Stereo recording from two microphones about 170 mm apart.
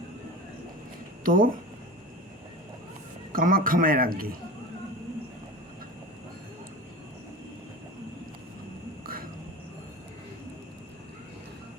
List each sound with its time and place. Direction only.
1.2 s speech: 55° right (ahead or behind)
3.3 s a man's voice: 55° right (ahead or behind)
9.0 s a sound: 60° right (ahead or behind)